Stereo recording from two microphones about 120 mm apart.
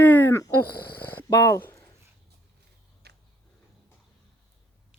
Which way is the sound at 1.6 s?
20° left (ahead or behind).